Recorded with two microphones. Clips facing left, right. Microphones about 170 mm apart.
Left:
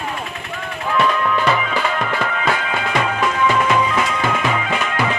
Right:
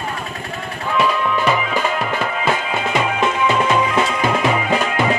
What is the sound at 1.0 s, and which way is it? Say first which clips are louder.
Music: even; 10° right (ahead or behind).